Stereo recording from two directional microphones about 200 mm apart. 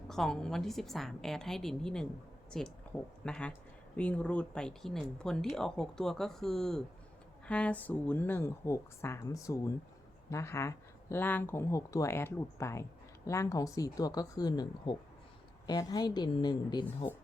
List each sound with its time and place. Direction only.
0.1 s a woman's voice: centre (ahead or behind); by 16.8 s 20° left (ahead or behind)